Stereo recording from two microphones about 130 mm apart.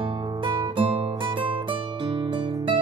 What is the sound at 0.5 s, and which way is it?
Music, 40° right (ahead or behind).